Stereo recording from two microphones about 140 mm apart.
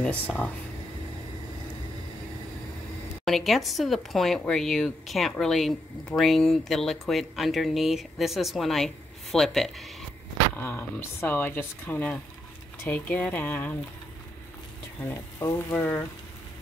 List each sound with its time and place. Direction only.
3.3 s speech: centre (ahead or behind)
10.5 s speech: 15° left (ahead or behind)
15.0 s speech: 15° left (ahead or behind)